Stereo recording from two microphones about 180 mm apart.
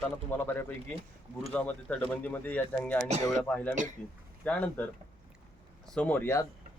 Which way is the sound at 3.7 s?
45° right (ahead or behind).